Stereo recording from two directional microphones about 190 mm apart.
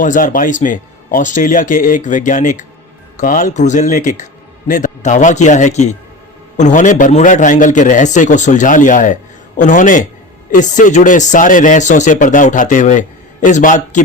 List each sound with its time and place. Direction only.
0.0 s speech: 45° left (ahead or behind)